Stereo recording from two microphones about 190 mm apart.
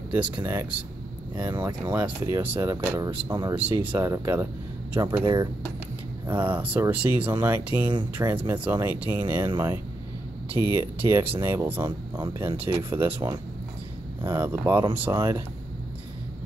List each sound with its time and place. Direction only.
0.1 s speech: 10° right (ahead or behind)
1.3 s speech: 20° right (ahead or behind)
1.9 s speech: 10° right (ahead or behind)
7.9 s speech: 25° right (ahead or behind)
8.3 s speech: 10° right (ahead or behind)